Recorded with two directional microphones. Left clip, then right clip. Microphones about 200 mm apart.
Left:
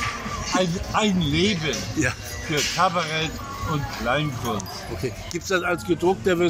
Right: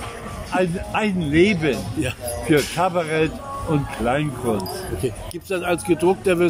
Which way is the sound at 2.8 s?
25° right (ahead or behind).